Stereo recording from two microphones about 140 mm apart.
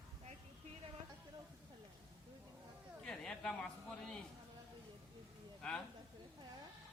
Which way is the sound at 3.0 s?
5° left (ahead or behind).